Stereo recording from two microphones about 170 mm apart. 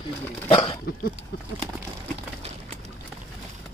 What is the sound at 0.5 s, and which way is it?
Dog, 30° left (ahead or behind).